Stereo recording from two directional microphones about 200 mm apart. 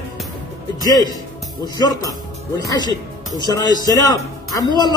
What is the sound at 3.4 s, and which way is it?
Speech, 20° left (ahead or behind).